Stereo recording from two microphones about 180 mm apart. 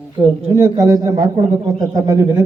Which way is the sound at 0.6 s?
20° right (ahead or behind).